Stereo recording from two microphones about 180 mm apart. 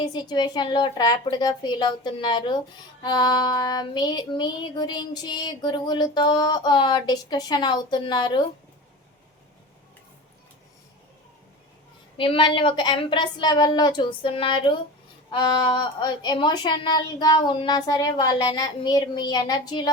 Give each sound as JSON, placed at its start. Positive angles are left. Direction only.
{"t": 0.0, "sound": "child singing", "side_deg": 25}
{"t": 12.1, "sound": "child singing", "side_deg": 30}